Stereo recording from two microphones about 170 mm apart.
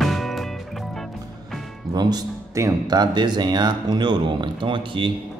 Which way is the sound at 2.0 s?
25° right (ahead or behind).